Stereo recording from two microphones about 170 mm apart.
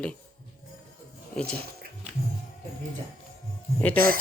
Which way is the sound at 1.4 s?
5° left (ahead or behind).